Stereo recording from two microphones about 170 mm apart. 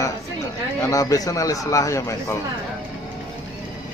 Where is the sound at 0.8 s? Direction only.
20° left (ahead or behind).